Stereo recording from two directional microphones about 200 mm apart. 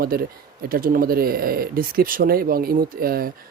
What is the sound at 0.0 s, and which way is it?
Speech, 50° right (ahead or behind).